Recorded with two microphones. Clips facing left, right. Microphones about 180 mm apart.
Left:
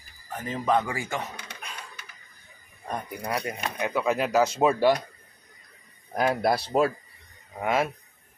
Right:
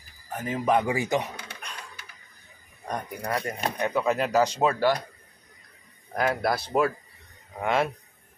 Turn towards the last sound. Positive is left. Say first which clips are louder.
# even
turn(degrees=5)  # may be behind; listen again after turning